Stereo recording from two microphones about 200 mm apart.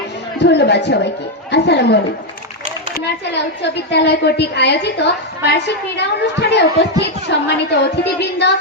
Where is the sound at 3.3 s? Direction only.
55° left (ahead or behind).